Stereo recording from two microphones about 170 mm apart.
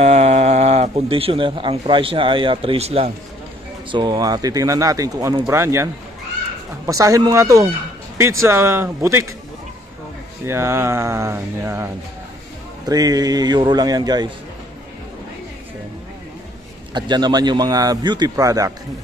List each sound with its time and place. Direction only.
0.0 s speech: 40° right (ahead or behind); by 5.9 s 15° right (ahead or behind)
6.9 s speech: 20° right (ahead or behind)
10.4 s speech: 15° right (ahead or behind)
16.9 s speech: 25° right (ahead or behind)